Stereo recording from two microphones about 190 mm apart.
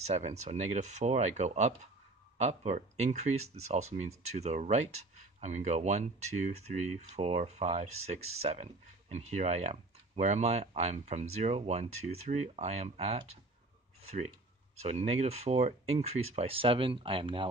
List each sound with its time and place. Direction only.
0.0 s speech: 35° right (ahead or behind)